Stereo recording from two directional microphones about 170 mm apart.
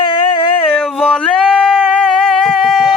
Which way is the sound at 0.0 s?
30° left (ahead or behind).